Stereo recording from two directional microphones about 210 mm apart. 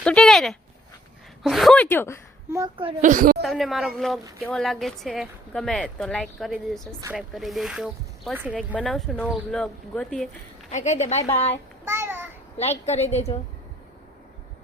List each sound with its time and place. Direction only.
0.0 s a sound: 5° left (ahead or behind)
1.5 s a woman's voice: centre (ahead or behind)
3.0 s a woman's voice: 40° right (ahead or behind)
3.4 s a woman's voice: centre (ahead or behind)
10.7 s a woman's voice: 35° left (ahead or behind)
11.9 s a sound: 10° right (ahead or behind)
12.8 s a woman's voice: 30° left (ahead or behind)